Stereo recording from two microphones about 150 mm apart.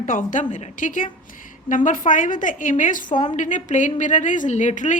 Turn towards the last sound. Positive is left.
turn(degrees=55)  # may be behind; listen again after turning